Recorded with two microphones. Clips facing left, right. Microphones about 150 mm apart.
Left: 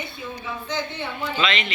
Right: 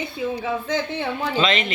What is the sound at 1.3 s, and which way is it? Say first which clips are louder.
Speech: right 3 dB; 40° right (ahead or behind).